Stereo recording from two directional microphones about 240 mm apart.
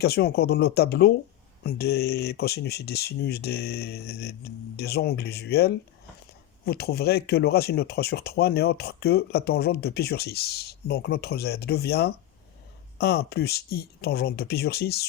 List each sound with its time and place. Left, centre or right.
0.0 s speech: left